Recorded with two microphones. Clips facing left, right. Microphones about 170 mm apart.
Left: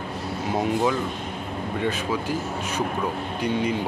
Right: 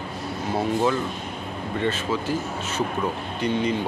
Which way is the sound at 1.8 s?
15° left (ahead or behind).